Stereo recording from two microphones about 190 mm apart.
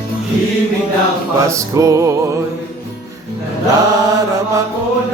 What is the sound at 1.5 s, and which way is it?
Music, 15° right (ahead or behind).